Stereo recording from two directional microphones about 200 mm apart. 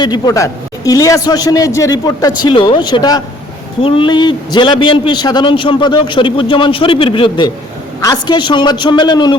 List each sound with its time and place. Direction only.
0.0 s a man's voice: 20° left (ahead or behind)